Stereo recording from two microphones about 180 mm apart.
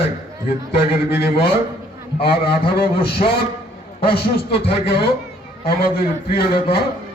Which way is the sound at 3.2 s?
45° left (ahead or behind).